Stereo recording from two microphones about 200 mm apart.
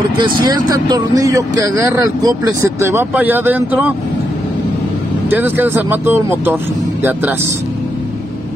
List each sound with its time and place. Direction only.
0.2 s speech: 20° right (ahead or behind)
5.3 s speech: 10° right (ahead or behind)